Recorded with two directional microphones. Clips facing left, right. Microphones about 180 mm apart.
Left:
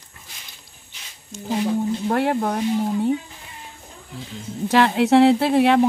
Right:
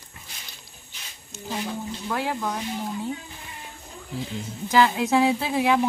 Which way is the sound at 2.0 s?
55° left (ahead or behind).